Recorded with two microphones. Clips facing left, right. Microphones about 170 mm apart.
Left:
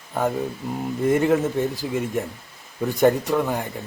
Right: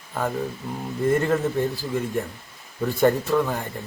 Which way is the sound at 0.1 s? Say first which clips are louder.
Left 3 dB; 15° left (ahead or behind).